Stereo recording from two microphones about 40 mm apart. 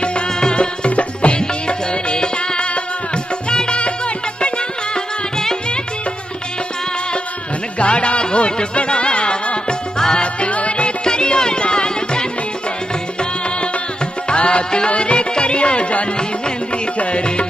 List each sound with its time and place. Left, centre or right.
0.0 s music: left
4.9 s music: centre
7.8 s music: left
10.2 s music: left
11.1 s music: left
14.3 s music: left
16.2 s music: left